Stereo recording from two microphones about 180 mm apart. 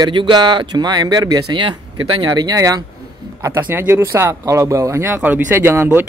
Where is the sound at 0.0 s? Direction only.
25° right (ahead or behind).